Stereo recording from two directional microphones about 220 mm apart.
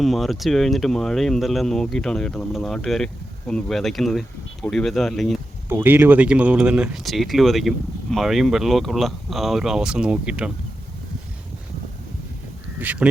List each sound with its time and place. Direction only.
0.0 s speech: centre (ahead or behind)
5.6 s speech: 10° right (ahead or behind)
12.8 s speech: 5° right (ahead or behind)